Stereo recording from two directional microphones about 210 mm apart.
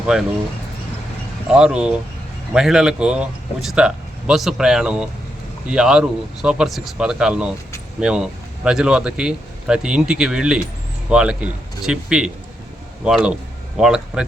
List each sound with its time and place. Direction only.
1.5 s speech: 5° right (ahead or behind)